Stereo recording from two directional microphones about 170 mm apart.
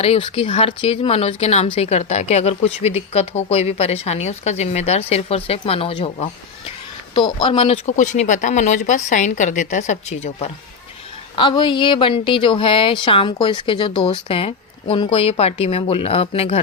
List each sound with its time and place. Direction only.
0.0 s a man's voice: 30° left (ahead or behind)
11.3 s speech: 30° left (ahead or behind)